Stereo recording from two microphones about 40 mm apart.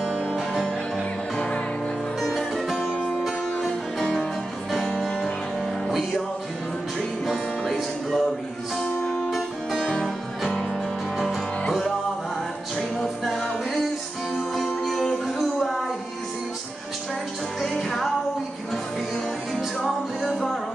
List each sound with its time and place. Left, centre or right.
0.1 s music: left
0.9 s music: centre
2.2 s music: centre
3.5 s music: centre
5.9 s music: centre
7.7 s music: centre
8.8 s music: centre
12.7 s music: centre
17.6 s music: centre
20.2 s music: centre